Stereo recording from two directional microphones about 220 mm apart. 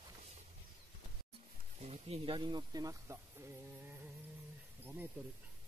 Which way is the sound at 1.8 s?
30° right (ahead or behind).